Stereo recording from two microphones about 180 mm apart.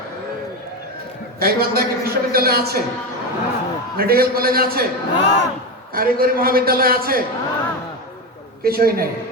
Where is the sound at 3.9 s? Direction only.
55° right (ahead or behind).